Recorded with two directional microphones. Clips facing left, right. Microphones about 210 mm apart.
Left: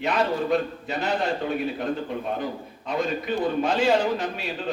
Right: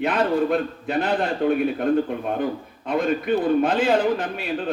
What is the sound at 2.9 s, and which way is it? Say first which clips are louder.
A man's voice: right 5 dB; 55° right (ahead or behind).